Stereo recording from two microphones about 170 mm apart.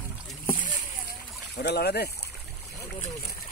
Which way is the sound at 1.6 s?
70° left (ahead or behind).